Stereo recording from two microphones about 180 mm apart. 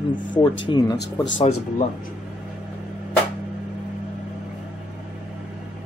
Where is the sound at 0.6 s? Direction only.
25° left (ahead or behind).